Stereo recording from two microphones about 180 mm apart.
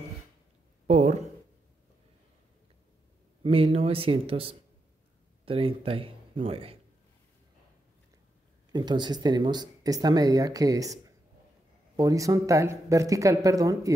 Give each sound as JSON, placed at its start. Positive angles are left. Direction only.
{"t": 0.8, "sound": "speech", "side_deg": -40}
{"t": 3.4, "sound": "a man's voice", "side_deg": -30}
{"t": 8.7, "sound": "speech", "side_deg": -25}